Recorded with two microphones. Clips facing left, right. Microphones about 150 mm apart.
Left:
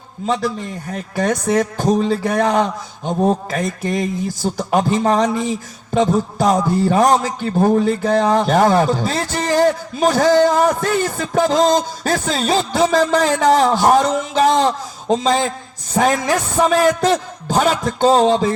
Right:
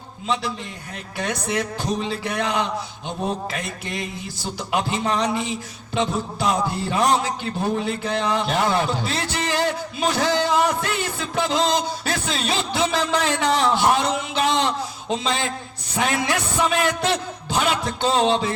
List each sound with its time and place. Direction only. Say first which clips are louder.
0.9 s speech: left 8 dB; 45° left (ahead or behind)